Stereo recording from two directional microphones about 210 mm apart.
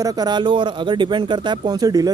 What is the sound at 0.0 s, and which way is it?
A man's voice, 20° right (ahead or behind).